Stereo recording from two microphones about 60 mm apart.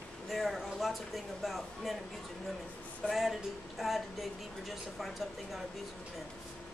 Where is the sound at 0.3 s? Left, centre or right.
Centre.